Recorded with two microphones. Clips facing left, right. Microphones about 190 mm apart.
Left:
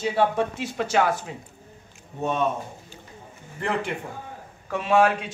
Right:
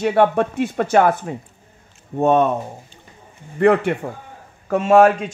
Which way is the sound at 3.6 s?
60° right (ahead or behind).